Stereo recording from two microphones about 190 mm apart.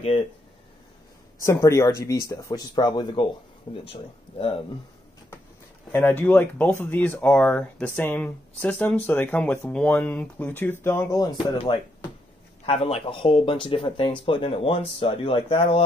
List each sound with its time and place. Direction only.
1.4 s speech: 15° left (ahead or behind); by 4.6 s 30° left (ahead or behind)
5.9 s speech: 10° left (ahead or behind); by 15.8 s 30° left (ahead or behind)